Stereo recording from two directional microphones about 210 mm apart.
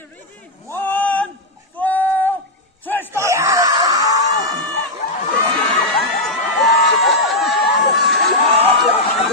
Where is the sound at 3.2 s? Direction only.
15° right (ahead or behind).